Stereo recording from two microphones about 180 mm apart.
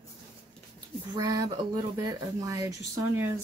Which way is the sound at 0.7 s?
20° right (ahead or behind).